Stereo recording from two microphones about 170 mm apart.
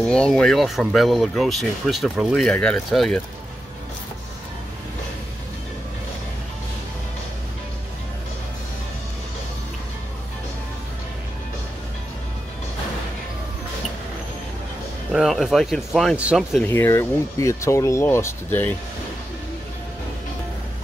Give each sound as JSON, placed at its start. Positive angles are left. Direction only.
{"t": 0.0, "sound": "speech", "side_deg": 5}
{"t": 15.1, "sound": "speech", "side_deg": 0}
{"t": 16.6, "sound": "speech", "side_deg": 15}